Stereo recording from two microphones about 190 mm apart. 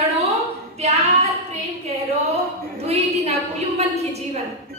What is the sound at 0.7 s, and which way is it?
Speech, 35° right (ahead or behind).